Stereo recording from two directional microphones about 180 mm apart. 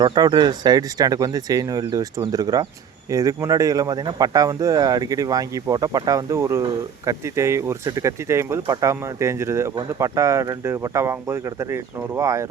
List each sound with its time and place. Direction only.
0.0 s speech: 25° right (ahead or behind)